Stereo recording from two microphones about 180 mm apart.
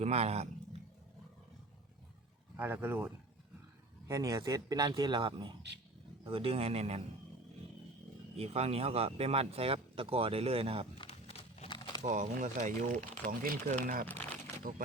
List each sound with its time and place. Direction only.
0.0 s a man's voice: 35° right (ahead or behind)
2.6 s speech: 10° right (ahead or behind)
4.1 s a man's voice: 20° right (ahead or behind); by 7.0 s 35° right (ahead or behind)
8.4 s speech: 35° right (ahead or behind)
10.9 s a sound: 35° left (ahead or behind)
12.0 s speech: 45° right (ahead or behind)